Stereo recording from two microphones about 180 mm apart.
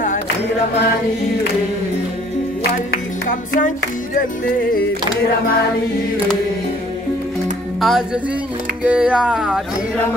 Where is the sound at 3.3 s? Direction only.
45° left (ahead or behind).